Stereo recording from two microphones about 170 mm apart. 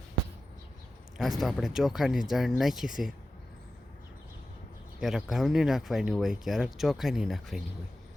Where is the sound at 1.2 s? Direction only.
Centre (ahead or behind).